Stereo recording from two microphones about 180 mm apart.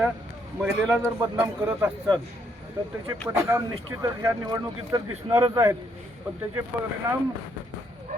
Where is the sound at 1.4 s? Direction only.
15° right (ahead or behind).